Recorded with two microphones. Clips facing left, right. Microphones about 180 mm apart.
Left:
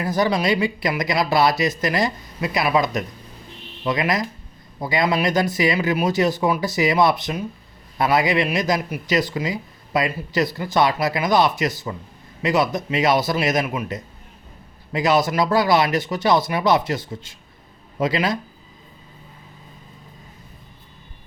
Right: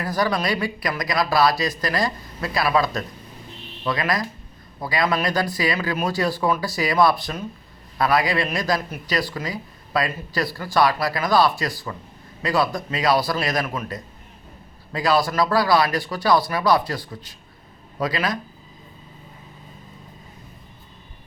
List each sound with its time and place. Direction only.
0.0 s a man's voice: 20° left (ahead or behind)